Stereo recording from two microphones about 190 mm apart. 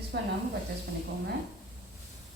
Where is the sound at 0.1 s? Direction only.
60° right (ahead or behind).